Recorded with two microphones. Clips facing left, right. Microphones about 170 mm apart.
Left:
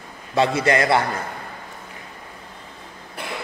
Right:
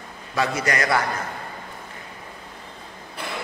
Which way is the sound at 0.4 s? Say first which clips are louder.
Left 5 dB; 25° left (ahead or behind).